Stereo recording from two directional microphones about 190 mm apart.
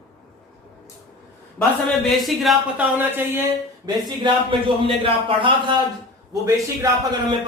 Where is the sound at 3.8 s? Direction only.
25° right (ahead or behind).